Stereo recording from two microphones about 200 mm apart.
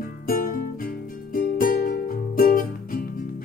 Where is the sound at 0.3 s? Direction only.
45° left (ahead or behind).